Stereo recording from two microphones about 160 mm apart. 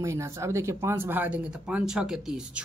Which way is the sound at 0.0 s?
15° right (ahead or behind).